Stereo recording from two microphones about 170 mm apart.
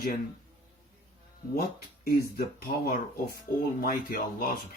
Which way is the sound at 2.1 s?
60° left (ahead or behind).